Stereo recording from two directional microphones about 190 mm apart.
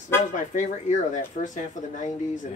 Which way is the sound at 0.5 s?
40° left (ahead or behind).